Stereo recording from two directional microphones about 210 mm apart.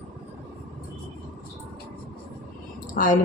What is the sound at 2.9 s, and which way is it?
Speech, 40° left (ahead or behind).